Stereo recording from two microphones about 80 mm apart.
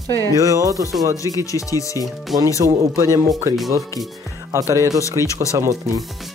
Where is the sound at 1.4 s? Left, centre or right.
Left.